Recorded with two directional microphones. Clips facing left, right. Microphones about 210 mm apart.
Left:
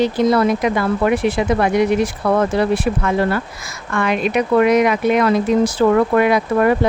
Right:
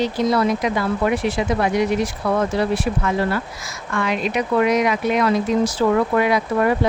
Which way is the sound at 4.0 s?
60° left (ahead or behind).